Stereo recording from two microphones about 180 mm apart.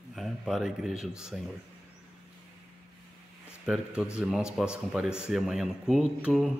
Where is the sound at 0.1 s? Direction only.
Centre (ahead or behind).